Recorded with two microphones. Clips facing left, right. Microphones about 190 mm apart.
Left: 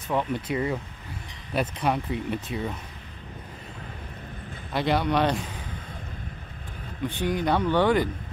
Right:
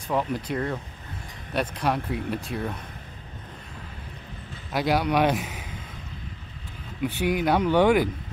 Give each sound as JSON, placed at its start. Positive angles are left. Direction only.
{"t": 0.1, "sound": "speech", "side_deg": 0}
{"t": 4.7, "sound": "speech", "side_deg": -5}
{"t": 7.0, "sound": "speech", "side_deg": -10}